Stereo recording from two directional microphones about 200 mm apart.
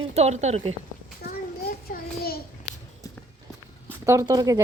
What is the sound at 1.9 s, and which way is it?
Child singing, 50° left (ahead or behind).